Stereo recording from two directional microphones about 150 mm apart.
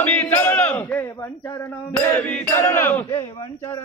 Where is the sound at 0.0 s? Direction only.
10° left (ahead or behind).